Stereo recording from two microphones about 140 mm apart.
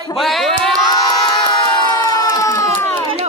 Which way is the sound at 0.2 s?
Centre (ahead or behind).